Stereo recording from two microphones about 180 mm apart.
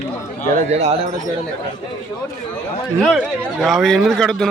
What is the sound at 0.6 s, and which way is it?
Speech, 35° right (ahead or behind).